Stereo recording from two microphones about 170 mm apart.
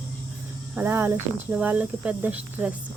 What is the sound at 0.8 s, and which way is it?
Speech, 15° right (ahead or behind).